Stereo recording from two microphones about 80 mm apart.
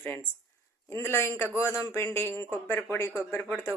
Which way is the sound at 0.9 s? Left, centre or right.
Left.